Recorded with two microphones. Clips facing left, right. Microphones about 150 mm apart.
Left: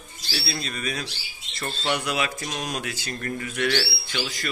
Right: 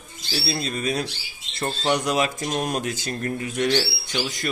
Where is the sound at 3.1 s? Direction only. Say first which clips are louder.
Right 1 dB; 25° right (ahead or behind).